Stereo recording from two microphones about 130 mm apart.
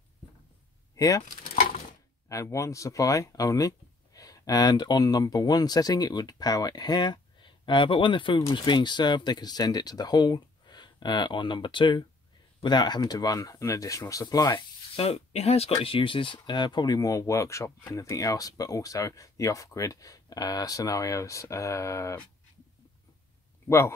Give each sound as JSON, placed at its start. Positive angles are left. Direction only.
{"t": 0.9, "sound": "speech", "side_deg": 25}
{"t": 2.2, "sound": "speech", "side_deg": 25}
{"t": 15.0, "sound": "speech", "side_deg": 50}